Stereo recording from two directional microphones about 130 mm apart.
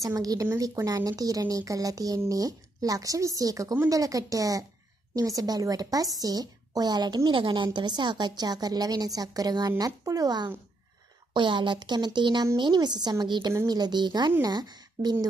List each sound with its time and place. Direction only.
0.0 s a woman's voice: 25° right (ahead or behind)